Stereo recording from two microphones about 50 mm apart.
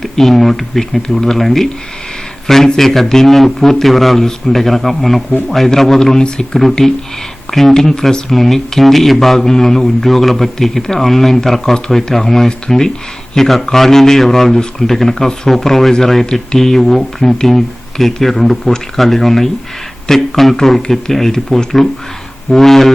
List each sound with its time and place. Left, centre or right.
0.0 s speech: centre